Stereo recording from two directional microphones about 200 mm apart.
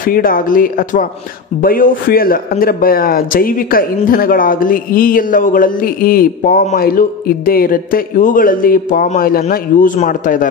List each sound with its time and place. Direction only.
0.0 s a man's voice: 45° left (ahead or behind)